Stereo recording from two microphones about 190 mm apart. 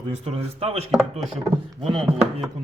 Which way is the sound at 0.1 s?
30° right (ahead or behind).